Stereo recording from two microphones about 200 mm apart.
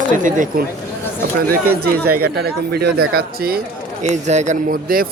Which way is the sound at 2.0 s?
50° right (ahead or behind).